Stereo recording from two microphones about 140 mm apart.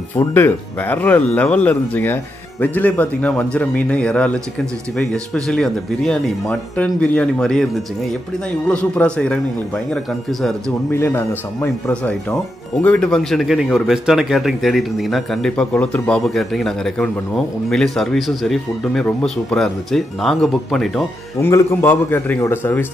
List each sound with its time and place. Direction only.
0.3 s speech: 15° left (ahead or behind)
8.9 s speech: 10° left (ahead or behind)
10.9 s speech: 20° left (ahead or behind); by 21.1 s centre (ahead or behind)
21.4 s speech: 20° left (ahead or behind)